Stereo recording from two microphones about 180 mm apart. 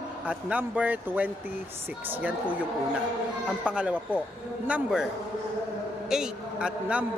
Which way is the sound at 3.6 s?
5° right (ahead or behind).